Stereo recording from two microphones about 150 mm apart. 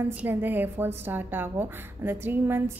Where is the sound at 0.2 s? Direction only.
10° right (ahead or behind).